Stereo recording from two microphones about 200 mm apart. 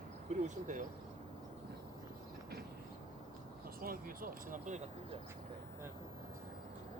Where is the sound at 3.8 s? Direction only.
45° right (ahead or behind).